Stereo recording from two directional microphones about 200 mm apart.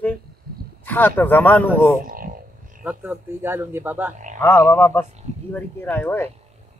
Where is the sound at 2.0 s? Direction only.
45° right (ahead or behind).